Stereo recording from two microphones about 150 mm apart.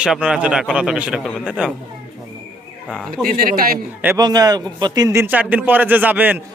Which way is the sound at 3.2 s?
70° right (ahead or behind).